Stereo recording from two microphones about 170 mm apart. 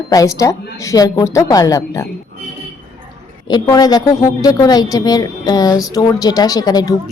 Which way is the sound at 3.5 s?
25° left (ahead or behind).